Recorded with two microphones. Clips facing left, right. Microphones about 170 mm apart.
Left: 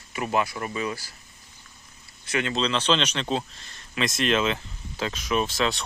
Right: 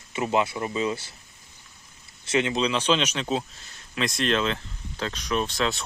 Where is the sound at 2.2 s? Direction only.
20° right (ahead or behind).